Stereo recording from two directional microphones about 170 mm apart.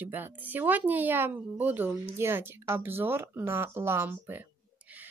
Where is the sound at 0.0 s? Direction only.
10° right (ahead or behind).